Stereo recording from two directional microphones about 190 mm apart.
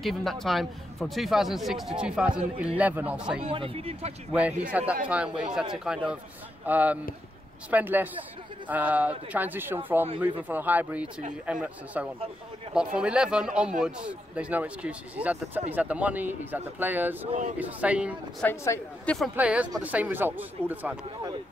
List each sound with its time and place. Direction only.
0.0 s speech: centre (ahead or behind)
3.4 s speech: 30° right (ahead or behind)
4.3 s speech: 5° right (ahead or behind)
18.4 s a man's voice: 15° left (ahead or behind)
19.3 s speech: 5° right (ahead or behind)